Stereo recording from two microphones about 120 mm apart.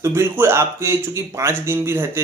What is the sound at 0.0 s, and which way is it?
Speech, 20° right (ahead or behind).